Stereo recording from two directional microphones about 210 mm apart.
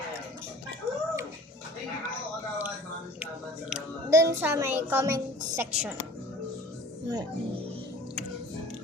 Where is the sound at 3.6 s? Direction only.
5° right (ahead or behind).